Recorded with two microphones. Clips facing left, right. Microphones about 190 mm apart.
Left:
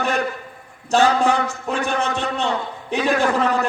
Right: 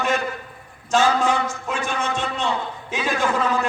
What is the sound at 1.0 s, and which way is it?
A man's voice, 65° left (ahead or behind).